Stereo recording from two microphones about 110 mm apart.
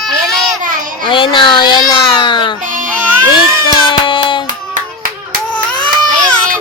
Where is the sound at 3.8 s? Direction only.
50° left (ahead or behind).